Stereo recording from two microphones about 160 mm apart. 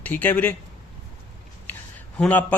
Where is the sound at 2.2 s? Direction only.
10° left (ahead or behind).